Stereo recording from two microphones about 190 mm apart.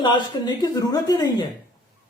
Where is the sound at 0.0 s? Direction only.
25° left (ahead or behind).